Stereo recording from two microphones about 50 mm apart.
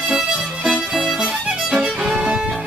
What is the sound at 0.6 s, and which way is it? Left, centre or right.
Violin, centre.